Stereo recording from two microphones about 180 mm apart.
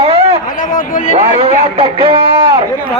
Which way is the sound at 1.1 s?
30° right (ahead or behind).